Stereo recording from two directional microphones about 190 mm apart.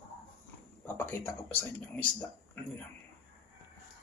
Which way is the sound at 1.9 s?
10° left (ahead or behind).